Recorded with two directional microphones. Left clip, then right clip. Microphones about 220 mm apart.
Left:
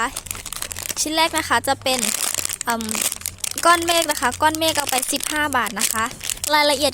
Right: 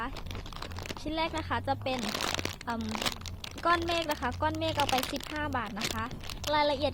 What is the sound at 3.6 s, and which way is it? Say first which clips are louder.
A woman's voice: left 12 dB; 45° left (ahead or behind).